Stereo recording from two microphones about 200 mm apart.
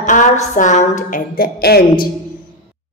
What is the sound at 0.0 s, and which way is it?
A woman's voice, 40° left (ahead or behind).